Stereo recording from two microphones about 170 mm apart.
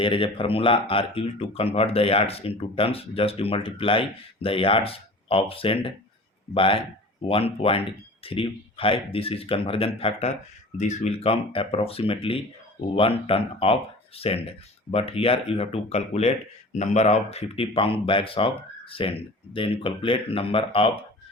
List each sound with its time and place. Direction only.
0.0 s speech: 30° left (ahead or behind)
14.8 s speech: 35° left (ahead or behind)